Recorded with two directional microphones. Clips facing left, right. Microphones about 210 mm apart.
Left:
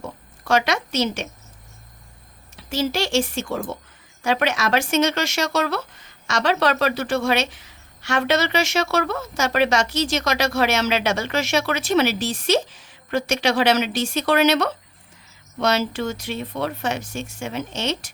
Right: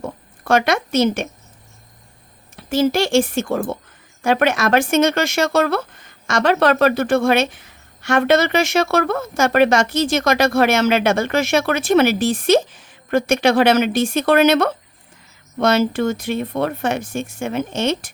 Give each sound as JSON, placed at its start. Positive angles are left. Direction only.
{"t": 0.0, "sound": "speech", "side_deg": -55}
{"t": 2.6, "sound": "speech", "side_deg": -55}